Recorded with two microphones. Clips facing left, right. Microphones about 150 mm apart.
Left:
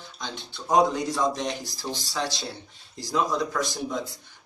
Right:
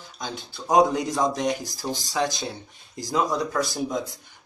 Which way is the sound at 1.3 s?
45° right (ahead or behind).